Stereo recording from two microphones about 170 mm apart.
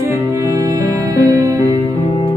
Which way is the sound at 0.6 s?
20° right (ahead or behind).